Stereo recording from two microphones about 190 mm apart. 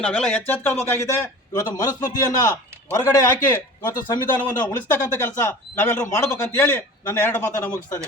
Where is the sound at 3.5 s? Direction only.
10° left (ahead or behind).